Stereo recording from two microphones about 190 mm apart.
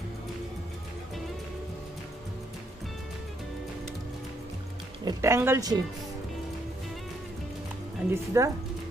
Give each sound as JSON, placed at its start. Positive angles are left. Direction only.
{"t": 5.0, "sound": "speech", "side_deg": -15}
{"t": 8.1, "sound": "speech", "side_deg": -15}